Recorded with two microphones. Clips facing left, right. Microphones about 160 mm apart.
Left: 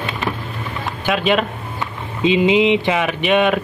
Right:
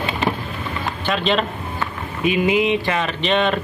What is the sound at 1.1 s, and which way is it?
Speech, 10° left (ahead or behind).